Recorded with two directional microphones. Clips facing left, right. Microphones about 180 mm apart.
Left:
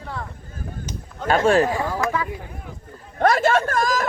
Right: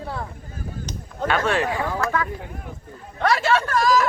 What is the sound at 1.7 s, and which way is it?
Speech, 15° left (ahead or behind).